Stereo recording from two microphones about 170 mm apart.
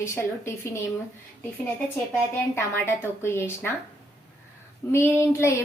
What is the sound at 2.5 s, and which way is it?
A woman's voice, 15° left (ahead or behind).